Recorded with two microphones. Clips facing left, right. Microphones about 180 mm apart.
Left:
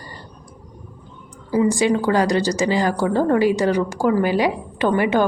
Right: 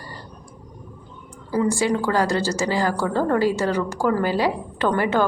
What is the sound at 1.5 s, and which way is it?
A woman's voice, 15° left (ahead or behind).